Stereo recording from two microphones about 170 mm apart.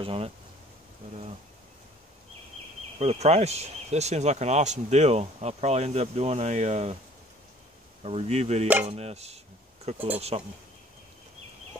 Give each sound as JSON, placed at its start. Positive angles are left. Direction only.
{"t": 0.0, "sound": "speech", "side_deg": -35}
{"t": 3.0, "sound": "speech", "side_deg": -40}
{"t": 8.0, "sound": "speech", "side_deg": -35}
{"t": 9.9, "sound": "speech", "side_deg": -10}